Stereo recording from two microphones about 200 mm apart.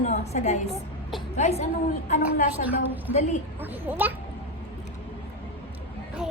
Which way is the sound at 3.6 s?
10° right (ahead or behind).